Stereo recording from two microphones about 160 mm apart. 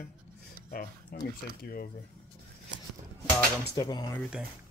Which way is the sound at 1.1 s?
70° left (ahead or behind).